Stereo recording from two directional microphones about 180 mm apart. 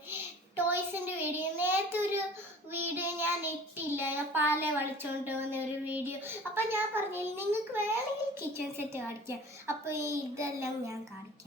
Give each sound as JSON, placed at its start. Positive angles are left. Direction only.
{"t": 0.1, "sound": "child singing", "side_deg": -10}
{"t": 9.6, "sound": "a woman's voice", "side_deg": -15}